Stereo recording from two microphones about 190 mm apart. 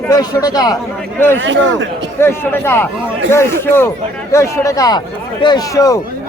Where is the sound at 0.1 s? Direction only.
20° left (ahead or behind).